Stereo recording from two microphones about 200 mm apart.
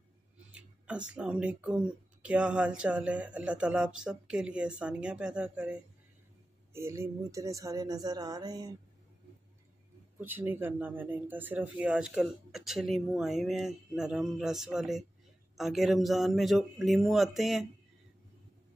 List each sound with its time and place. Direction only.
0.6 s a sound: 5° right (ahead or behind)
1.1 s speech: 5° right (ahead or behind)
10.1 s speech: 10° right (ahead or behind)